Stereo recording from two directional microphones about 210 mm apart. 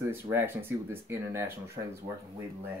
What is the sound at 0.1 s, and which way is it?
Speech, 10° right (ahead or behind).